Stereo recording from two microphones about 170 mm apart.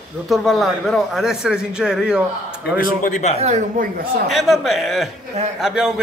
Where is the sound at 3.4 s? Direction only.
45° right (ahead or behind).